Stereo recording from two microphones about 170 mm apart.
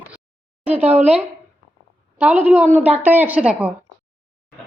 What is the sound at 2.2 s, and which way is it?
A woman's voice, 10° right (ahead or behind).